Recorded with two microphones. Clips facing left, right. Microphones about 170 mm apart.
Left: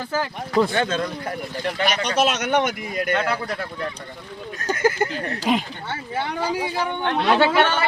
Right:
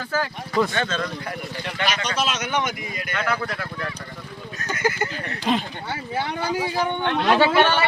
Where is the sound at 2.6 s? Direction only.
55° left (ahead or behind).